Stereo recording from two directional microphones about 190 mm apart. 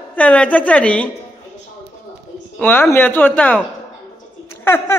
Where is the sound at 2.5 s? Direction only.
5° left (ahead or behind).